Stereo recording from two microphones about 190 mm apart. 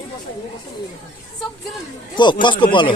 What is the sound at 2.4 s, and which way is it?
Speech, 25° left (ahead or behind).